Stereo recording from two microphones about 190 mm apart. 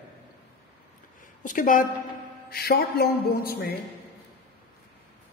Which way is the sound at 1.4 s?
45° left (ahead or behind).